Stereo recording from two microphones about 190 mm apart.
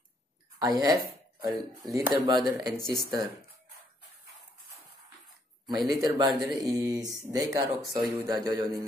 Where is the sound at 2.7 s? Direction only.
20° left (ahead or behind).